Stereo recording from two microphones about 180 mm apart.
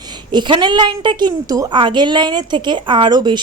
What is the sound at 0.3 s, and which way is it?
A woman's voice, 25° right (ahead or behind).